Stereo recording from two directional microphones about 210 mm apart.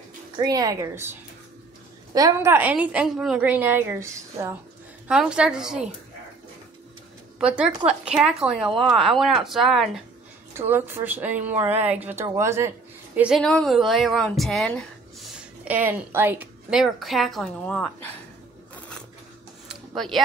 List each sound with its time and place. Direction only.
0.4 s a woman's voice: 15° right (ahead or behind)
2.1 s a woman's voice: 15° right (ahead or behind)
7.3 s a woman's voice: 5° right (ahead or behind)
20.0 s speech: centre (ahead or behind)